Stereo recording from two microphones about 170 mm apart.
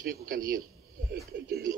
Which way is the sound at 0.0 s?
60° right (ahead or behind).